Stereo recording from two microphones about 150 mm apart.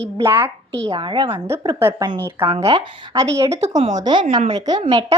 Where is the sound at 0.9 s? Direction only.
30° right (ahead or behind).